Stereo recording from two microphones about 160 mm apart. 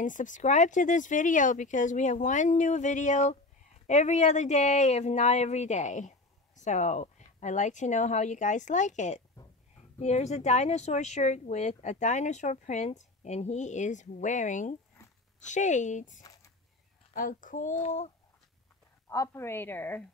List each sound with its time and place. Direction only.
0.0 s speech: 55° left (ahead or behind)
16.2 s a sound: 25° left (ahead or behind)
17.1 s speech: 55° left (ahead or behind)
19.0 s a woman's voice: 20° left (ahead or behind)